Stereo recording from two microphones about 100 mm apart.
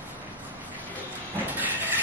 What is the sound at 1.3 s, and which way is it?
Train, 20° right (ahead or behind).